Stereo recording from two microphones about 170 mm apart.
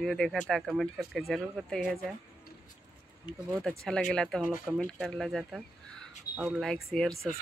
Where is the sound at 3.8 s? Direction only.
5° left (ahead or behind).